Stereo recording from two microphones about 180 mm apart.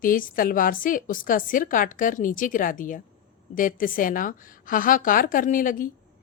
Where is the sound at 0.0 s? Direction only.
50° left (ahead or behind).